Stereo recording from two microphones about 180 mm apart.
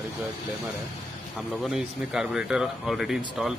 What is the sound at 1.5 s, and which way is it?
Speech, centre (ahead or behind).